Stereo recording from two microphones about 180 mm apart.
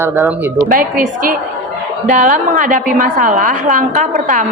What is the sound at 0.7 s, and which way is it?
A woman's voice, 50° right (ahead or behind).